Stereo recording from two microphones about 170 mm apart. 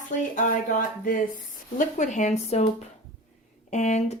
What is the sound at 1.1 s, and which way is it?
A woman's voice, 50° left (ahead or behind).